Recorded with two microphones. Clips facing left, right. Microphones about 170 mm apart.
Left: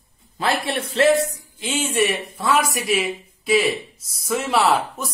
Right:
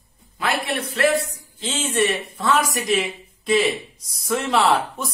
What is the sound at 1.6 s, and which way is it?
Speech, 10° left (ahead or behind).